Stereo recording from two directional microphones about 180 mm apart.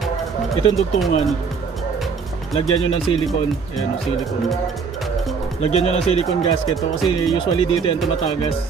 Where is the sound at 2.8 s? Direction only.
30° left (ahead or behind).